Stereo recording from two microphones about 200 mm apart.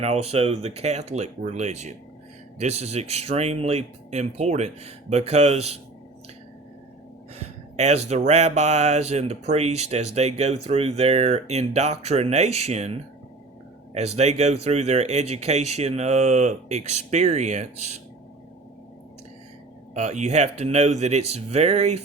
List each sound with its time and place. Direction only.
0.0 s speech: 30° right (ahead or behind)
7.3 s speech: 35° right (ahead or behind)
19.9 s speech: 35° right (ahead or behind)